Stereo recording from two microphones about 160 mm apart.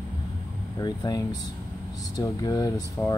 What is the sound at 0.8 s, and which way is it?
Speech, 25° left (ahead or behind).